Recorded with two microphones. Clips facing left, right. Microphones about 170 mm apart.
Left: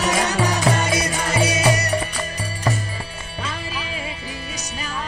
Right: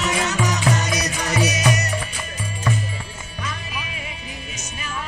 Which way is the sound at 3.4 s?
30° left (ahead or behind).